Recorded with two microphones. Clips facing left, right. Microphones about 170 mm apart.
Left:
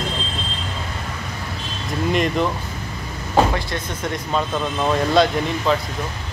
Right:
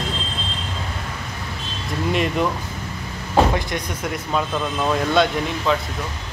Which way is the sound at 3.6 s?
15° right (ahead or behind).